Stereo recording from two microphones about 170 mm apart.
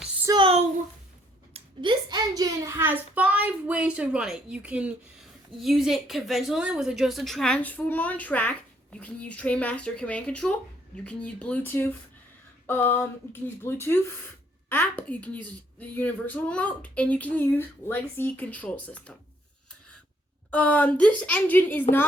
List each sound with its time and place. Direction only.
0.3 s a sound: 30° right (ahead or behind)
1.5 s a child's voice: 30° right (ahead or behind); by 19.1 s 10° left (ahead or behind)
20.5 s speech: 10° left (ahead or behind)